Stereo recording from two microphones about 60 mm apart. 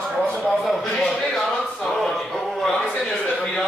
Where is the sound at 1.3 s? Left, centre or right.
Centre.